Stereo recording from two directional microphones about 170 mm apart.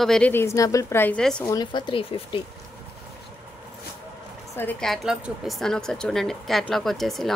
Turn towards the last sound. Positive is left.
turn(degrees=0)  # may be behind; listen again after turning